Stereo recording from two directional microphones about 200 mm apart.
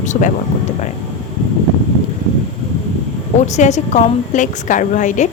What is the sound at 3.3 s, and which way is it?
A woman's voice, 35° left (ahead or behind).